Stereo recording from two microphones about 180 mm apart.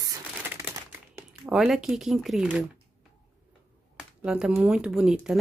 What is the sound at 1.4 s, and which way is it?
Speech, centre (ahead or behind).